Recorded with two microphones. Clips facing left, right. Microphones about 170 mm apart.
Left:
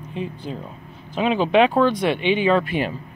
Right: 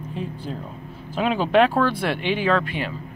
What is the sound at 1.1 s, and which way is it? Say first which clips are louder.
Speech: left 1 dB; 5° right (ahead or behind).